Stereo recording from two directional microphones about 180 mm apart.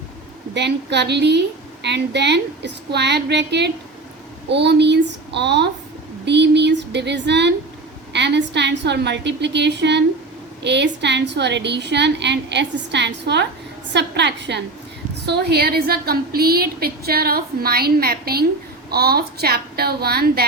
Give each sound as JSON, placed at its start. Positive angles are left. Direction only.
{"t": 0.5, "sound": "a woman's voice", "side_deg": -70}
{"t": 6.2, "sound": "a sound", "side_deg": -70}
{"t": 8.1, "sound": "a woman's voice", "side_deg": -75}